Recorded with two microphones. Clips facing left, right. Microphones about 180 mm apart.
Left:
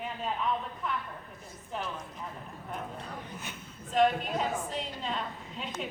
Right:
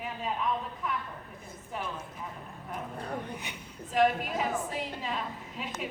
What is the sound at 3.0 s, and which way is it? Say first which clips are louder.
Speech: right 6 dB; 60° right (ahead or behind).